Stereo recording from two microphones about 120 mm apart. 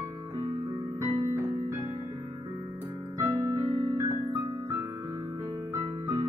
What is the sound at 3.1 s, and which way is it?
Keyboard, 25° right (ahead or behind).